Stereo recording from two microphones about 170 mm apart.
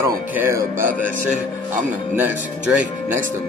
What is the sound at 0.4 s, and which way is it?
Speech, 15° right (ahead or behind).